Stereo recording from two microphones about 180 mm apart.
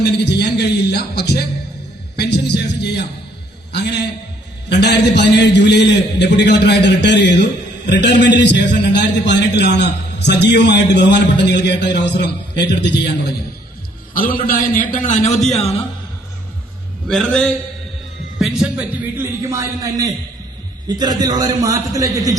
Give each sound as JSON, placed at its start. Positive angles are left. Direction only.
{"t": 0.0, "sound": "speech", "side_deg": 65}
{"t": 2.1, "sound": "music", "side_deg": 65}
{"t": 3.7, "sound": "a man's voice", "side_deg": 70}
{"t": 14.1, "sound": "a man's voice", "side_deg": 50}
{"t": 17.1, "sound": "a man's voice", "side_deg": 5}